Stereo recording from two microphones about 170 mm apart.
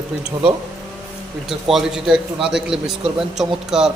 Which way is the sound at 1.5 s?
Centre (ahead or behind).